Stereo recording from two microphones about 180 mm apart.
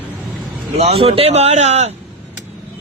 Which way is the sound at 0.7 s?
35° right (ahead or behind).